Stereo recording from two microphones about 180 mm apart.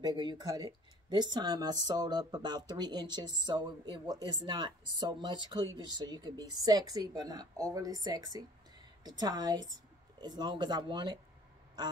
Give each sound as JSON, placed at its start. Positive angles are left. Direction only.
{"t": 0.0, "sound": "speech", "side_deg": -25}